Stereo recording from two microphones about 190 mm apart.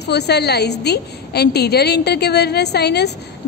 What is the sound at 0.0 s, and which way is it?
A woman's voice, 60° left (ahead or behind).